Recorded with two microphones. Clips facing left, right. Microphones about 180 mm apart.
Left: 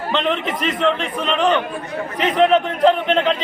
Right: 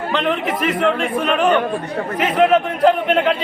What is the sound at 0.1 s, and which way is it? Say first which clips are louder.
A man's voice: even; centre (ahead or behind).